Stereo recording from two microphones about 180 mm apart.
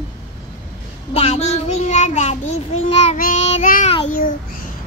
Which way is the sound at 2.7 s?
35° left (ahead or behind).